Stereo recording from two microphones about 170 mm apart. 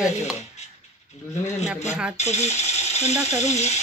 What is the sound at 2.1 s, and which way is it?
Speech, 40° left (ahead or behind).